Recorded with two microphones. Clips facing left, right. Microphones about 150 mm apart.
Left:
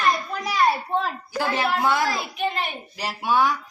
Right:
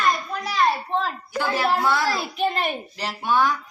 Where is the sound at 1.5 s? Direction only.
15° left (ahead or behind).